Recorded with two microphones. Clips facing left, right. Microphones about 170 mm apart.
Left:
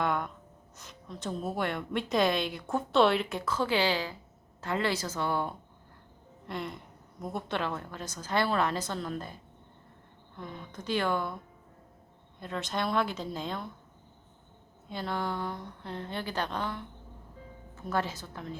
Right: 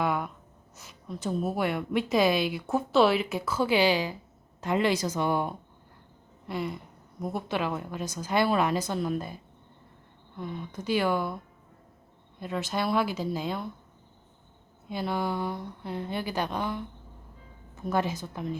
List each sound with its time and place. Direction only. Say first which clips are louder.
0.0 s gasp: right 2 dB; 5° right (ahead or behind)
0.8 s a woman's voice: right 5 dB; 5° right (ahead or behind)
6.5 s a sound: right 4 dB; 5° right (ahead or behind)
7.2 s a woman's voice: right 3 dB; 5° right (ahead or behind)
12.4 s a woman's voice: right 3 dB; 5° right (ahead or behind)
14.8 s a woman's voice: right 4 dB; 10° right (ahead or behind)
17.8 s a woman's voice: right 4 dB; 15° right (ahead or behind)